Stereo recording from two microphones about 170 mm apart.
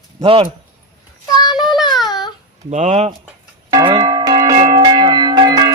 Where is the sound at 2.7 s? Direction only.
45° right (ahead or behind).